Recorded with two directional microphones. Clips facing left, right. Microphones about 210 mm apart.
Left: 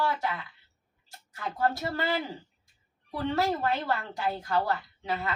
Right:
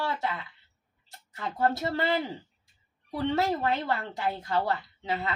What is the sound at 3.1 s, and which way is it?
Speech, 20° right (ahead or behind).